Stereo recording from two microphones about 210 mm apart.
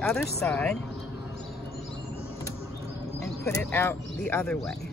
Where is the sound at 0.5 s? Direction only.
5° left (ahead or behind).